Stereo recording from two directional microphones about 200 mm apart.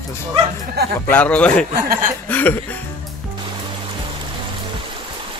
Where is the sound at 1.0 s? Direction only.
10° left (ahead or behind).